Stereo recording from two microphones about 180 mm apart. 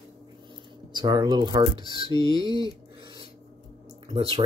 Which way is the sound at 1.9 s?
25° left (ahead or behind).